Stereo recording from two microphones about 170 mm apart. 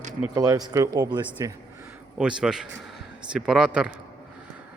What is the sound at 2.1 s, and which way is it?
Speech, 5° right (ahead or behind).